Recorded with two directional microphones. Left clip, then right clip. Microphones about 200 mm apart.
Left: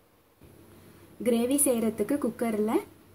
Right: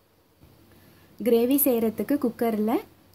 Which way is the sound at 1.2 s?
45° right (ahead or behind).